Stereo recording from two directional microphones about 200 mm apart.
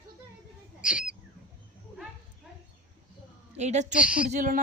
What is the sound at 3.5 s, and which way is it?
Speech, 35° right (ahead or behind).